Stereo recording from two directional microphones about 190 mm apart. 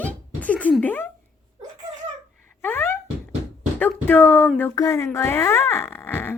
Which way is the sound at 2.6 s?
10° left (ahead or behind).